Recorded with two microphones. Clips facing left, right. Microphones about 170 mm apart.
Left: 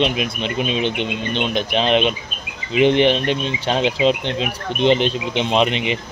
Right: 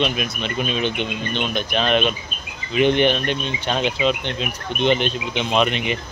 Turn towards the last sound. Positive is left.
turn(degrees=25)  # may be behind; listen again after turning